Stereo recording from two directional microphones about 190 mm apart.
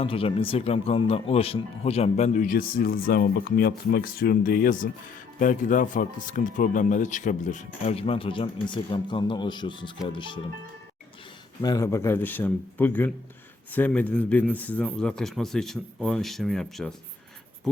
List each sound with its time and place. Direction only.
0.0 s speech: 30° left (ahead or behind)
11.6 s speech: 20° left (ahead or behind); by 16.9 s 5° left (ahead or behind)